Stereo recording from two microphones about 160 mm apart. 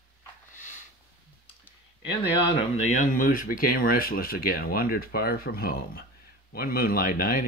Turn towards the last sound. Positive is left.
turn(degrees=60)  # may be behind; listen again after turning